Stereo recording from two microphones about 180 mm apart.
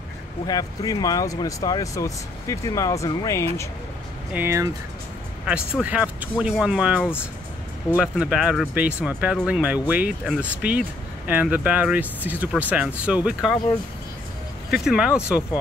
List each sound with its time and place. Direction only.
0.5 s speech: 20° left (ahead or behind)
4.3 s speech: 10° right (ahead or behind)
5.8 s speech: 5° right (ahead or behind)
14.7 s speech: 5° right (ahead or behind)